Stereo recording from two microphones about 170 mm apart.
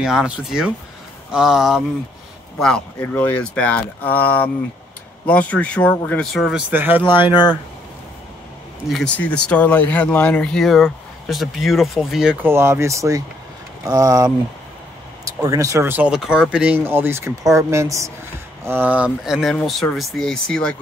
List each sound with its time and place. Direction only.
0.0 s speech: 5° right (ahead or behind)
6.4 s speech: 10° right (ahead or behind)
8.8 s speech: 5° left (ahead or behind)
12.5 s speech: 15° right (ahead or behind)
15.4 s speech: 20° right (ahead or behind); by 20.7 s 5° left (ahead or behind)